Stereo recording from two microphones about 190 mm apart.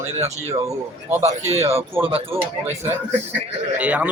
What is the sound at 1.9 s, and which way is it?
Speech, 10° right (ahead or behind).